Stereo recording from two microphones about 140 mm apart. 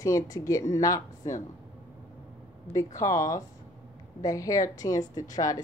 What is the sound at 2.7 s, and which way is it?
Speech, 20° left (ahead or behind).